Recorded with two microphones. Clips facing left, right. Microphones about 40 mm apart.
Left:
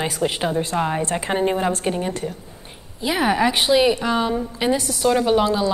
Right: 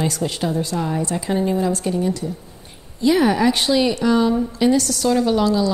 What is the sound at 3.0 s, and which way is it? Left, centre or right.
A woman's voice, centre.